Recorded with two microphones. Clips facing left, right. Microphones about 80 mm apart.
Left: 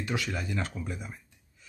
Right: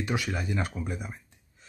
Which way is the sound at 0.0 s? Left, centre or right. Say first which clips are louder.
Right 2 dB; centre.